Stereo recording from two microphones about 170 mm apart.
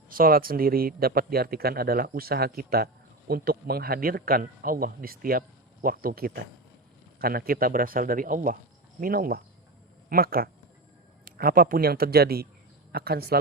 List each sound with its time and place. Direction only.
0.1 s speech: 60° right (ahead or behind)